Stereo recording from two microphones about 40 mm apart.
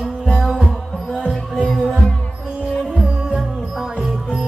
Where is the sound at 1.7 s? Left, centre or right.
Centre.